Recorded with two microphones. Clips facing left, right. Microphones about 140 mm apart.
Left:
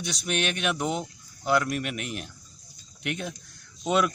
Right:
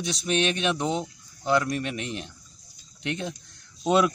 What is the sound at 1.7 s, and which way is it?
A man's voice, 25° right (ahead or behind).